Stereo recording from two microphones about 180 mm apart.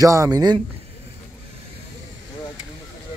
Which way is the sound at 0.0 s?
20° right (ahead or behind).